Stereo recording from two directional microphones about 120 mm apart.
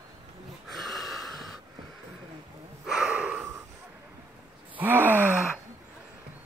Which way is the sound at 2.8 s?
5° right (ahead or behind).